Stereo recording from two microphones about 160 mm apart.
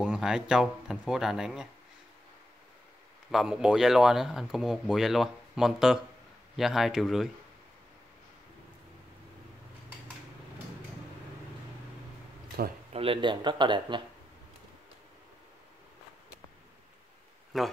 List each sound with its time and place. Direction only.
0.0 s speech: 5° right (ahead or behind)
3.3 s speech: 5° right (ahead or behind)
12.6 s speech: 70° right (ahead or behind)
12.9 s speech: 35° right (ahead or behind)
17.5 s speech: centre (ahead or behind)